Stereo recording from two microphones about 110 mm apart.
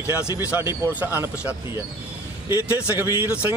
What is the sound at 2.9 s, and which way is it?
Speech, 20° right (ahead or behind).